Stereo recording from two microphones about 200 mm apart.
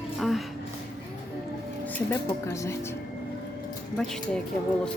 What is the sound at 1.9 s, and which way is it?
Speech, 15° left (ahead or behind).